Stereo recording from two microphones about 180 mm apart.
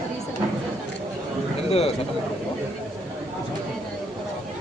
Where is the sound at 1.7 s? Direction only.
35° left (ahead or behind).